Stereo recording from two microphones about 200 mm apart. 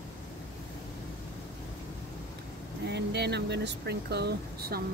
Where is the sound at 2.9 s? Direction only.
55° right (ahead or behind).